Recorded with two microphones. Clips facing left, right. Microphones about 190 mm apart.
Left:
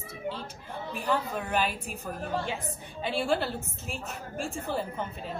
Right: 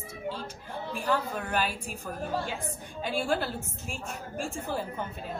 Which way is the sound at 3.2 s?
Centre (ahead or behind).